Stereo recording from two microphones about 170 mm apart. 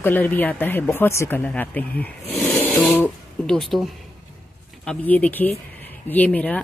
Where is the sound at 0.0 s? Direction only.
10° left (ahead or behind).